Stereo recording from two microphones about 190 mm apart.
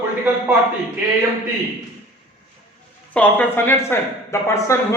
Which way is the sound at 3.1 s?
10° left (ahead or behind).